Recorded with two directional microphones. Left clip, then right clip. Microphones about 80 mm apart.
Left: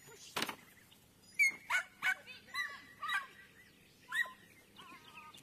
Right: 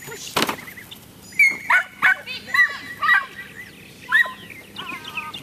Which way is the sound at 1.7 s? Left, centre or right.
Left.